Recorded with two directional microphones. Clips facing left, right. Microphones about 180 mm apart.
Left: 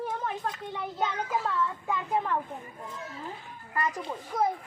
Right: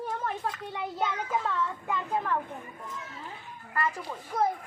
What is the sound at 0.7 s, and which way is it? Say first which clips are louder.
Speech: even; 10° right (ahead or behind).